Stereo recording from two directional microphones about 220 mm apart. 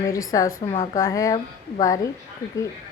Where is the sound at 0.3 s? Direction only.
15° left (ahead or behind).